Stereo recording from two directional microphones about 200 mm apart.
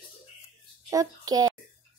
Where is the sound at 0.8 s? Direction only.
20° right (ahead or behind).